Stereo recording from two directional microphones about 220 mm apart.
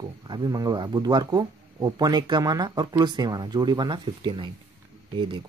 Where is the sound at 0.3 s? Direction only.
20° right (ahead or behind).